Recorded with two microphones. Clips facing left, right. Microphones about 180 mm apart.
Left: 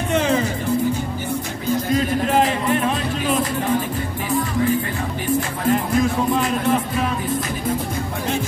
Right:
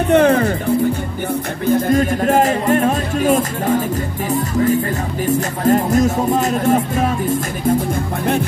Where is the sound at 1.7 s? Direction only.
50° right (ahead or behind).